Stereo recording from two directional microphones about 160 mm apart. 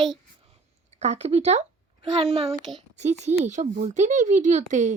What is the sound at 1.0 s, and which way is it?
A child's voice, 45° right (ahead or behind).